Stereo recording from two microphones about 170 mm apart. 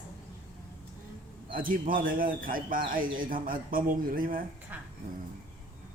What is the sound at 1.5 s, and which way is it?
A man's voice, 55° right (ahead or behind).